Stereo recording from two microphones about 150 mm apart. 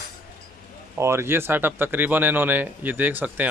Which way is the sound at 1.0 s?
15° right (ahead or behind).